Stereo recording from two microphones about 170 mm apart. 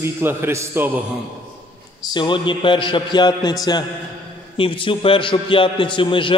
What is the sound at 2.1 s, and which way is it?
A man's voice, 30° left (ahead or behind).